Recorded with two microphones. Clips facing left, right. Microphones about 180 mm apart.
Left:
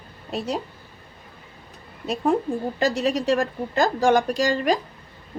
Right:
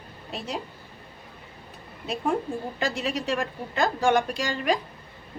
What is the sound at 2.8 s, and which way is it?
A woman's voice, 40° left (ahead or behind).